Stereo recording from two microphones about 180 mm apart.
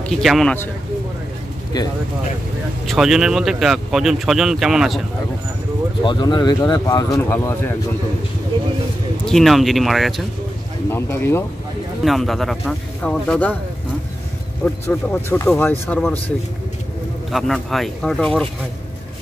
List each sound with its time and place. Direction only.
0.0 s speech: centre (ahead or behind)
1.7 s speech: 20° left (ahead or behind)
2.9 s speech: centre (ahead or behind)
6.0 s speech: 25° left (ahead or behind)
9.2 s speech: centre (ahead or behind)
10.9 s speech: 15° left (ahead or behind)
12.0 s speech: centre (ahead or behind)
14.6 s speech: 10° left (ahead or behind)
17.3 s speech: centre (ahead or behind)